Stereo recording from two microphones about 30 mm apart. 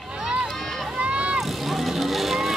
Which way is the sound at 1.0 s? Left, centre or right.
Right.